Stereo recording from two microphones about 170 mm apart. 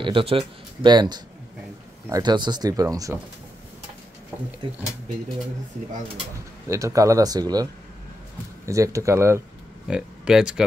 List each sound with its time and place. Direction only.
0.0 s speech: 30° right (ahead or behind)
6.7 s speech: 20° right (ahead or behind)
8.6 s speech: 20° right (ahead or behind)
9.8 s speech: 5° right (ahead or behind)